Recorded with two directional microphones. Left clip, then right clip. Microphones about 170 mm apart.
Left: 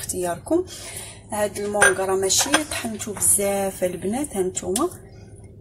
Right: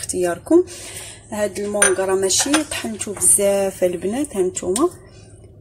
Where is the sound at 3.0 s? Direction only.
30° right (ahead or behind).